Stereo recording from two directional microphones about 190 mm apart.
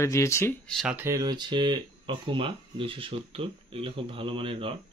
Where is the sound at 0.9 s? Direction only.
15° right (ahead or behind).